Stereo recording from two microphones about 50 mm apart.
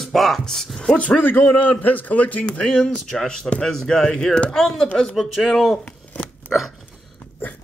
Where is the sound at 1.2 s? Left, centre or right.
Left.